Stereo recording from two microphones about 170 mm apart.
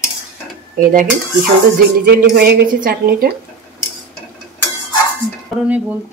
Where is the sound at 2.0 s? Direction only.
60° right (ahead or behind).